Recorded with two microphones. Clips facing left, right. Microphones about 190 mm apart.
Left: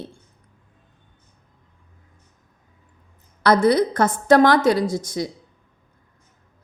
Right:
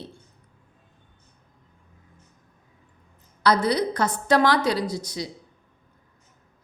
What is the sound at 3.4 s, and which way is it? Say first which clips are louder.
A woman's voice: left 5 dB; 50° left (ahead or behind).